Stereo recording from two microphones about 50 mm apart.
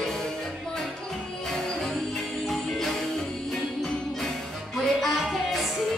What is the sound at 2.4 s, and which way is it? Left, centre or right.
Music, centre.